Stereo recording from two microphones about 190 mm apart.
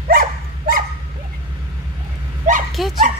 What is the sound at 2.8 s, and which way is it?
Speech, centre (ahead or behind).